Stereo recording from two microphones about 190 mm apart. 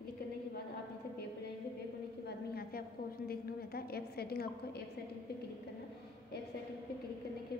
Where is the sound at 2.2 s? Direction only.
55° left (ahead or behind).